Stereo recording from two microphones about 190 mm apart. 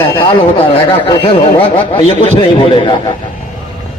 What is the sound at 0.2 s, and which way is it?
A man's voice, 25° left (ahead or behind).